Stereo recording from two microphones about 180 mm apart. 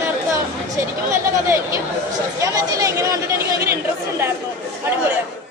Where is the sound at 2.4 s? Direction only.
20° right (ahead or behind).